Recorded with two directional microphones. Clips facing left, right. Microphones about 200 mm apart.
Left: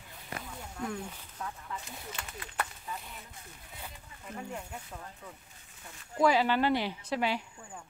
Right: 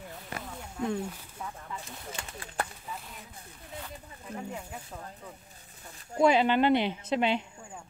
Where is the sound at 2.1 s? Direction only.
30° right (ahead or behind).